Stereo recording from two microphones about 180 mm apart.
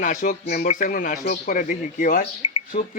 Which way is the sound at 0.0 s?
45° left (ahead or behind).